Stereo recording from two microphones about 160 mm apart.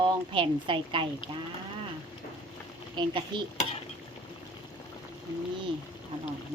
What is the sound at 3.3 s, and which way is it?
Stir, 30° right (ahead or behind).